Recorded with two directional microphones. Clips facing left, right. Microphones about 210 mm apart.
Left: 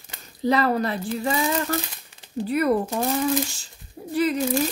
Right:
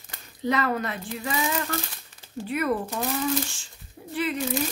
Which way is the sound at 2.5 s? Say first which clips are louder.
Left 5 dB; 35° left (ahead or behind).